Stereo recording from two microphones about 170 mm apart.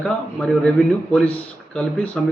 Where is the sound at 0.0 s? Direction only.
5° left (ahead or behind).